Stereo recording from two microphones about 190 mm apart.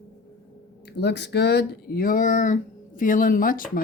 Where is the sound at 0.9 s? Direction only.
60° left (ahead or behind).